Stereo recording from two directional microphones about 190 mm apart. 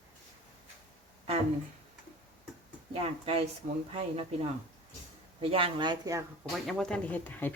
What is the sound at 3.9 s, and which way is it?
Speech, 30° right (ahead or behind).